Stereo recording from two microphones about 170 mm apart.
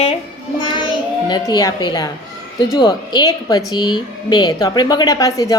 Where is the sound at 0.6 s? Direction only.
25° left (ahead or behind).